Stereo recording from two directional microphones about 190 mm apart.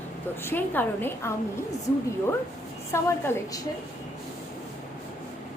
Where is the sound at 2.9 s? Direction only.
15° left (ahead or behind).